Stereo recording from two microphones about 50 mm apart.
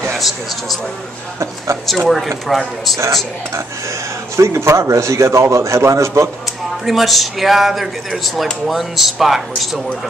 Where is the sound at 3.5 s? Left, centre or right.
Right.